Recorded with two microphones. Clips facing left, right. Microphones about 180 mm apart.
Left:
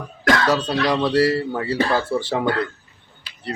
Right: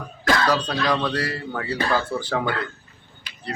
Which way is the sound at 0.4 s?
25° left (ahead or behind).